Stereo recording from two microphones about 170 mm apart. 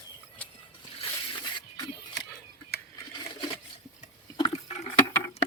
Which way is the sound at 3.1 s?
30° left (ahead or behind).